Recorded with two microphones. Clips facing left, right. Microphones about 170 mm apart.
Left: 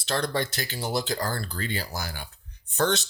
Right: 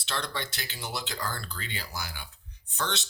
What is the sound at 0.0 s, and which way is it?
Speech, 40° left (ahead or behind).